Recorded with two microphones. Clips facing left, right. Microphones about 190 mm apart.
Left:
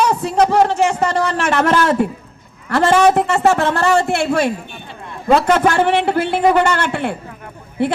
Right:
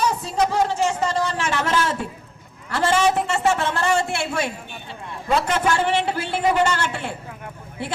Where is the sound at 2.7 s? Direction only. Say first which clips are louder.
Left 7 dB; 60° left (ahead or behind).